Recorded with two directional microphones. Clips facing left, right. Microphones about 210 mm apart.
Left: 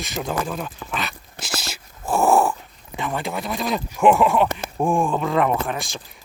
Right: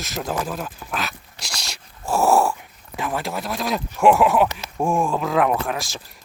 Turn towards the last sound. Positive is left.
turn(degrees=0)  # may be behind; listen again after turning